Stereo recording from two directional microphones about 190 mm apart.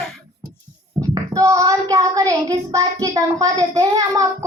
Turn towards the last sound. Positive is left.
turn(degrees=-20)  # may be behind; listen again after turning